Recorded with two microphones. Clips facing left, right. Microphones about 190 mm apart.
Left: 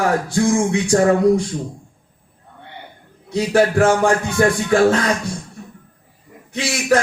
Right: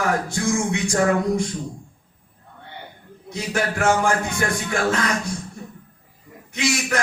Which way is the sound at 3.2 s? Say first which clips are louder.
Left 9 dB; 35° left (ahead or behind).